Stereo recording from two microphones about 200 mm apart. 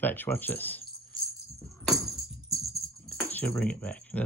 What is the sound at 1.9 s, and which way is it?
Music, centre (ahead or behind).